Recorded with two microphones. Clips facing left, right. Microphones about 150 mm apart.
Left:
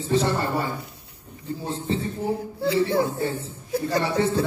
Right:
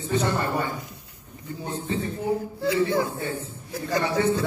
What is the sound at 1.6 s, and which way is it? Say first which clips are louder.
A man's voice: left 1 dB; 30° left (ahead or behind).